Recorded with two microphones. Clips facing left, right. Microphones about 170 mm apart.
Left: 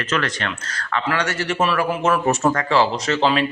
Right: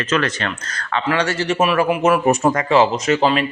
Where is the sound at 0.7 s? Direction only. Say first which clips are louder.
Right 3 dB; 20° right (ahead or behind).